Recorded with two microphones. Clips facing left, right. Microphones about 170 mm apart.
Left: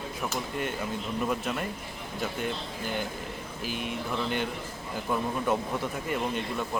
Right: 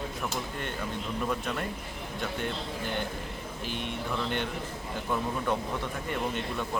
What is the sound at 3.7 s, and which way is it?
Speech, 5° left (ahead or behind).